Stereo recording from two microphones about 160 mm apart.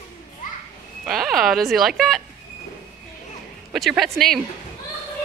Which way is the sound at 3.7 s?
Centre (ahead or behind).